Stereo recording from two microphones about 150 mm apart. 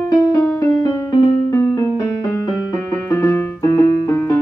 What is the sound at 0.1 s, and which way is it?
Music, 20° left (ahead or behind).